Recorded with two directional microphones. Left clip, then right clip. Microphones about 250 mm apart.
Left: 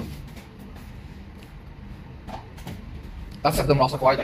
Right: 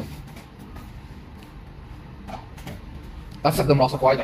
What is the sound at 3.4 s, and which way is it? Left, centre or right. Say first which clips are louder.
Speech: right 1 dB; right.